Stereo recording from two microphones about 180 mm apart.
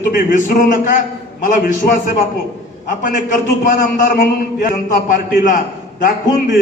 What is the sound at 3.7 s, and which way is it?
A man's voice, 45° left (ahead or behind).